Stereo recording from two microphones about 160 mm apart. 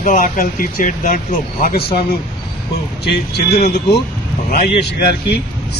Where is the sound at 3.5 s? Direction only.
90° left.